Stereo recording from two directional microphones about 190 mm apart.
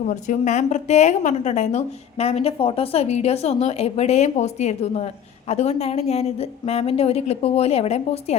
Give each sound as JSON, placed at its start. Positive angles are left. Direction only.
{"t": 0.0, "sound": "a woman's voice", "side_deg": 40}